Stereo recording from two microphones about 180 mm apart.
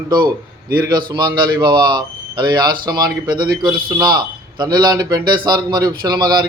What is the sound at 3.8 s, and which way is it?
A man's voice, 25° right (ahead or behind).